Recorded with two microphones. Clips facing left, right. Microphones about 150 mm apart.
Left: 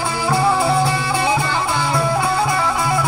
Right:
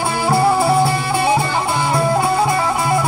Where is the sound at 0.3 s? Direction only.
35° right (ahead or behind).